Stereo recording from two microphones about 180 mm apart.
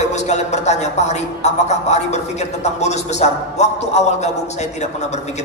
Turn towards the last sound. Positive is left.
turn(degrees=40)  # may be behind; listen again after turning